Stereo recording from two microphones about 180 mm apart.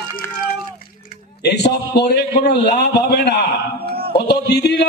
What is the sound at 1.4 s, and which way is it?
A man's voice, 70° left (ahead or behind).